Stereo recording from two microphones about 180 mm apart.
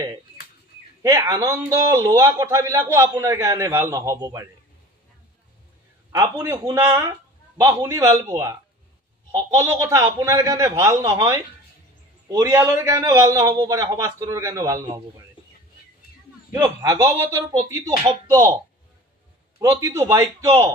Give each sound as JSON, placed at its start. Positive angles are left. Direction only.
{"t": 1.0, "sound": "a man's voice", "side_deg": -15}
{"t": 6.1, "sound": "a man's voice", "side_deg": -15}
{"t": 9.6, "sound": "a man's voice", "side_deg": -15}
{"t": 16.5, "sound": "a man's voice", "side_deg": -20}
{"t": 17.4, "sound": "a man's voice", "side_deg": -30}
{"t": 17.6, "sound": "a man's voice", "side_deg": -20}
{"t": 19.8, "sound": "a man's voice", "side_deg": -15}